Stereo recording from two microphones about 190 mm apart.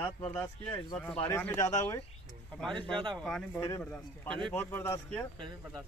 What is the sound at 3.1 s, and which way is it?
Speech, centre (ahead or behind).